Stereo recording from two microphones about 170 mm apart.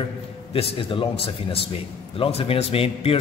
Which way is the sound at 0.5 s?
35° left (ahead or behind).